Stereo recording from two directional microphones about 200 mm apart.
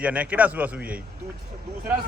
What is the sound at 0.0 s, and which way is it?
Speech, 5° right (ahead or behind).